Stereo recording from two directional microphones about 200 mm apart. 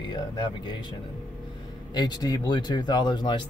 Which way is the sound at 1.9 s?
20° left (ahead or behind).